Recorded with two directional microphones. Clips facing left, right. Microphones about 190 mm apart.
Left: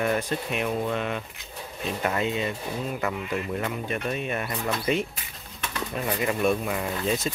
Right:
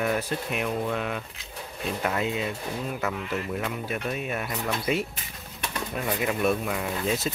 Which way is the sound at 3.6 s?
5° right (ahead or behind).